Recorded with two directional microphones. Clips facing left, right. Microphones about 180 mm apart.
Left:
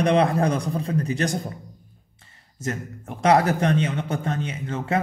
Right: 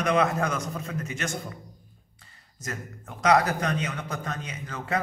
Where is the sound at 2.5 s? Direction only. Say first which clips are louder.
Left 7 dB; 30° left (ahead or behind).